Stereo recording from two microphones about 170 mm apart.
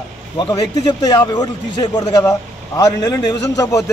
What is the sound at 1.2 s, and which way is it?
A man's voice, 25° left (ahead or behind).